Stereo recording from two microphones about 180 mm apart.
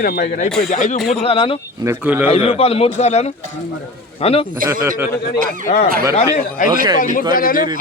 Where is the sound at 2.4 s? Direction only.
35° left (ahead or behind).